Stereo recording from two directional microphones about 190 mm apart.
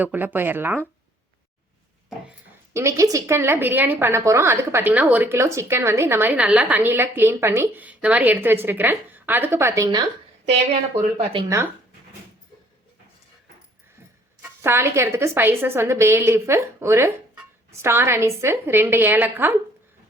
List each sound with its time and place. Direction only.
0.0 s a woman's voice: 10° right (ahead or behind)
2.7 s a woman's voice: 15° right (ahead or behind)
11.2 s speech: 30° right (ahead or behind)
11.4 s a woman's voice: 15° right (ahead or behind)
14.6 s a woman's voice: 15° right (ahead or behind)